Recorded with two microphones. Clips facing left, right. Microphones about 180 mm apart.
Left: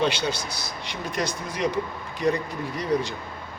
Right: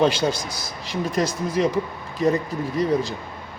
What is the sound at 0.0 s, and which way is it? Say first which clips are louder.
Speech: right 5 dB; 90° right.